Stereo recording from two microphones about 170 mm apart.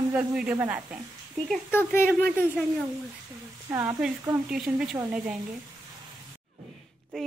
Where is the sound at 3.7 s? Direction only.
15° right (ahead or behind).